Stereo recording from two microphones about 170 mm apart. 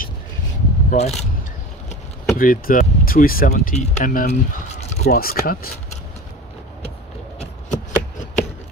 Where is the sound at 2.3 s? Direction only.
55° left (ahead or behind); by 5.1 s 40° left (ahead or behind).